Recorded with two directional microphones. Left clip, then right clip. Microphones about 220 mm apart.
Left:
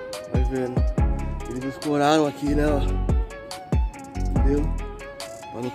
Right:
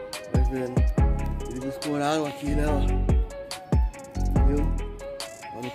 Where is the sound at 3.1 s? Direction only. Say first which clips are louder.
Even; centre (ahead or behind).